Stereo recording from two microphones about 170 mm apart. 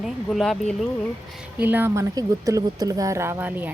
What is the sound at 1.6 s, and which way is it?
A woman's voice, 10° right (ahead or behind).